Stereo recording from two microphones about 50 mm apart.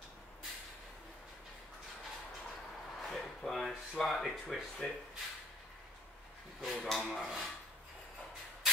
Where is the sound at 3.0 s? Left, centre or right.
Centre.